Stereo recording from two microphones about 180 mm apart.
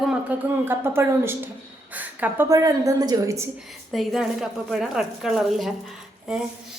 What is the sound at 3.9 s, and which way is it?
Speech, centre (ahead or behind).